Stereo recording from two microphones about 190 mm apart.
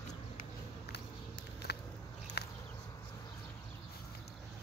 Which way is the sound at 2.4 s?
55° left (ahead or behind).